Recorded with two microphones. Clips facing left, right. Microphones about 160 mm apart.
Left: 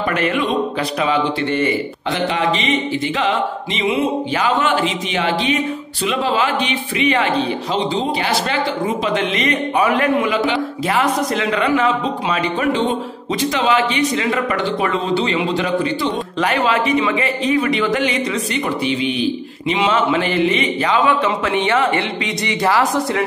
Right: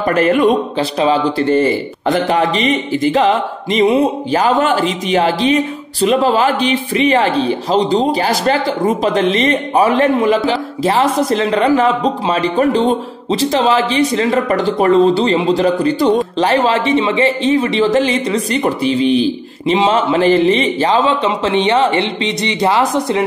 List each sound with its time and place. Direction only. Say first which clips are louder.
0.1 s a man's voice: right 9 dB; 40° right (ahead or behind); by 23.2 s 20° right (ahead or behind)